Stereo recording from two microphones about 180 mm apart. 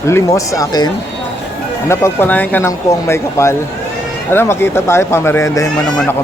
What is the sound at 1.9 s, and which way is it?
Speech, 15° left (ahead or behind).